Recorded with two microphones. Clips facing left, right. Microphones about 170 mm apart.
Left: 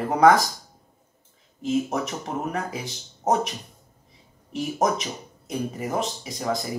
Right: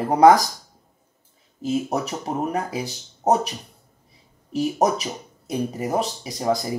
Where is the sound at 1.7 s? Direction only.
35° right (ahead or behind).